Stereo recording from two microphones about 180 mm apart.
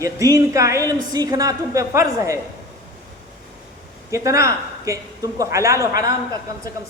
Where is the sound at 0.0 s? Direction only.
20° right (ahead or behind).